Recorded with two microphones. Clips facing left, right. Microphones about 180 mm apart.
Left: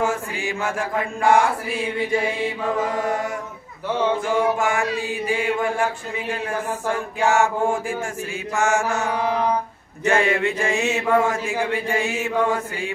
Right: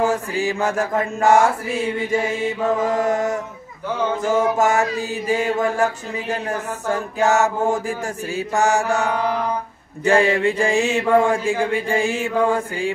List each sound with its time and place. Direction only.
0.0 s mantra: 35° right (ahead or behind)
4.2 s mantra: 40° right (ahead or behind)
7.2 s mantra: 40° right (ahead or behind)